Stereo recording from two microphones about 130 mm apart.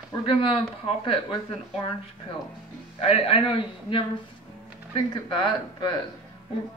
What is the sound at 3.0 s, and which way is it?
A man's voice, 50° left (ahead or behind).